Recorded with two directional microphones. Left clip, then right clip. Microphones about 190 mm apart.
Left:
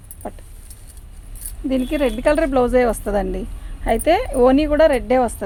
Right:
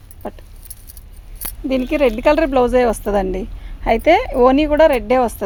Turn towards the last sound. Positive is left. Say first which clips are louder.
# right 2 dB
turn(degrees=-45)  # may be behind; listen again after turning